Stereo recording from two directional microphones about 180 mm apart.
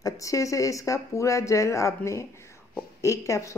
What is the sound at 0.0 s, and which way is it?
Speech, 20° left (ahead or behind).